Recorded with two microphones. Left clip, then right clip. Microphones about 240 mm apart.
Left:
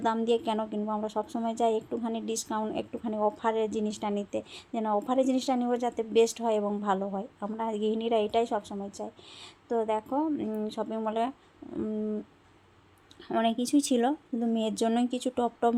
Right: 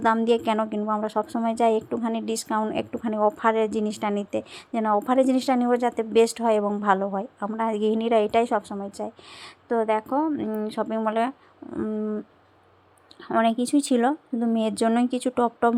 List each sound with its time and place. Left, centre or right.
0.0 s a woman's voice: centre
13.2 s a woman's voice: centre